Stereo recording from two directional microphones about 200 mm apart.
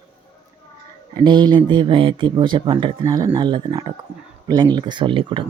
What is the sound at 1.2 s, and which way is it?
Speech, 25° right (ahead or behind).